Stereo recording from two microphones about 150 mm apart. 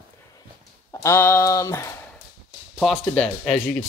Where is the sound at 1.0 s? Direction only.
15° left (ahead or behind).